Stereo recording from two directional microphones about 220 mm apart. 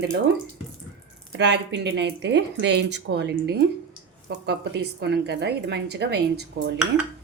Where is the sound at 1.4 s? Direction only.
50° right (ahead or behind).